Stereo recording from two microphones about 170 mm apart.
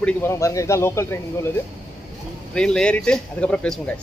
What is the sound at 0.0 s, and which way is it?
A man's voice, 15° left (ahead or behind).